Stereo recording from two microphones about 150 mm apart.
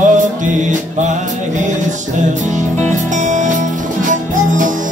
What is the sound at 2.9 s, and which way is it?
Music, 55° right (ahead or behind).